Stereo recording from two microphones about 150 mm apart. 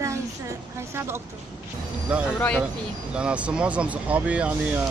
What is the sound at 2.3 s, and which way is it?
Speech, 10° left (ahead or behind).